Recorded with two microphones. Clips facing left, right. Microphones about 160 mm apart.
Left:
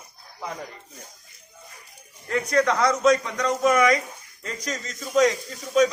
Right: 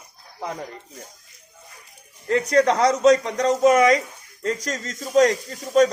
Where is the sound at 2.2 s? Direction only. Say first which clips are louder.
Right 4 dB; 35° right (ahead or behind).